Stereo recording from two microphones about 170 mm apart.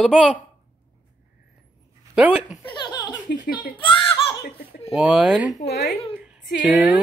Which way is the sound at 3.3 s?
55° left (ahead or behind).